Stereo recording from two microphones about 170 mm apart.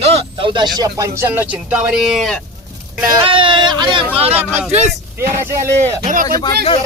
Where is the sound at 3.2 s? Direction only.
30° right (ahead or behind).